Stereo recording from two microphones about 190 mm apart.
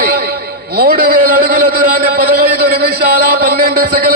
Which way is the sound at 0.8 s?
50° right (ahead or behind).